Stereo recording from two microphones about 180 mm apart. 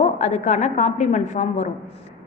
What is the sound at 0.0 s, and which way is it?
A woman's voice, 40° left (ahead or behind).